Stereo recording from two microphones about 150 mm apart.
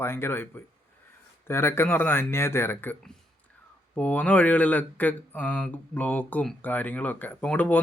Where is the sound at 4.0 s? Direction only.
10° left (ahead or behind).